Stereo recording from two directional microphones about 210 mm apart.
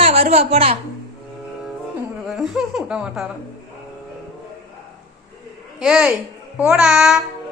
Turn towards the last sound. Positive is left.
turn(degrees=0)  # may be behind; listen again after turning